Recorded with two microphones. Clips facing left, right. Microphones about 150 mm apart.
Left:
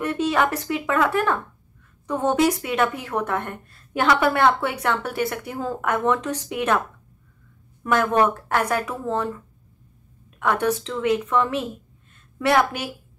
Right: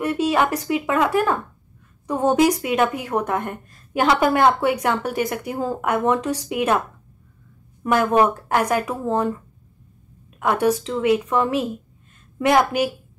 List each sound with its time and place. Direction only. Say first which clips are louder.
0.0 s a woman's voice: right 2 dB; 10° right (ahead or behind)
7.8 s a woman's voice: right 2 dB; 10° right (ahead or behind)
10.4 s a woman's voice: right 3 dB; 10° right (ahead or behind)